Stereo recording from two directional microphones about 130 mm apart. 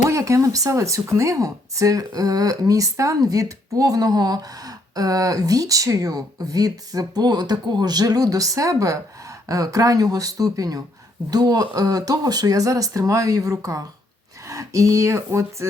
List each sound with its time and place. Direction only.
0.1 s speech: 25° right (ahead or behind)